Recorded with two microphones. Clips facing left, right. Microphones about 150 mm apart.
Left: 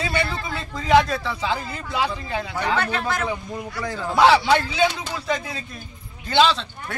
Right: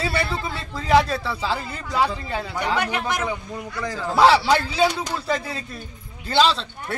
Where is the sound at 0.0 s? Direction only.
35° right (ahead or behind).